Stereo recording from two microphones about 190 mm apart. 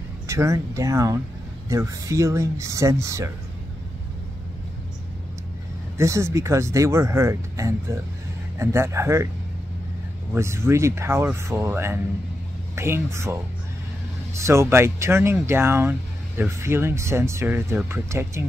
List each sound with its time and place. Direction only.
0.3 s speech: 15° right (ahead or behind)
5.9 s speech: 15° right (ahead or behind)
10.3 s speech: 15° right (ahead or behind)